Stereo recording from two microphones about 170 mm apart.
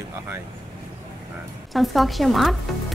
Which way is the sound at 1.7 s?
Centre (ahead or behind).